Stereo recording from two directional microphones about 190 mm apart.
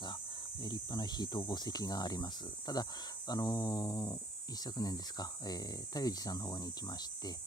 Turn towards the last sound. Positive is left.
turn(degrees=20)  # may be behind; listen again after turning